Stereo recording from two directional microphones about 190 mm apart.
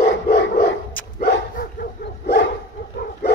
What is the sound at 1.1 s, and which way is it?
Dog, 50° left (ahead or behind).